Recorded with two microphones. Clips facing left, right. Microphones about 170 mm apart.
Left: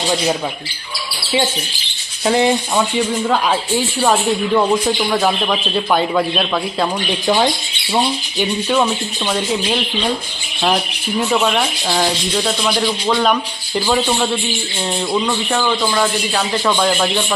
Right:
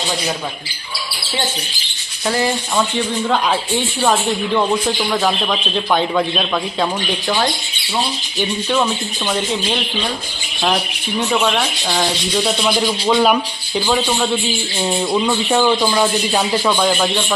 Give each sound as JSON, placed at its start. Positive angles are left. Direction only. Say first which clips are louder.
{"t": 2.2, "sound": "speech", "louder": "left 4 dB", "side_deg": 20}
{"t": 3.2, "sound": "speech", "louder": "left 1 dB", "side_deg": 5}
{"t": 7.9, "sound": "speech", "louder": "left 3 dB", "side_deg": 10}
{"t": 11.2, "sound": "speech", "louder": "left 1 dB", "side_deg": 0}
{"t": 14.8, "sound": "speech", "louder": "right 1 dB", "side_deg": -10}
{"t": 16.6, "sound": "speech", "louder": "even", "side_deg": 0}